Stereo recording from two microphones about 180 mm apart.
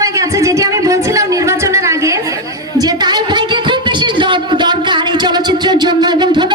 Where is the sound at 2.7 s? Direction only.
20° right (ahead or behind).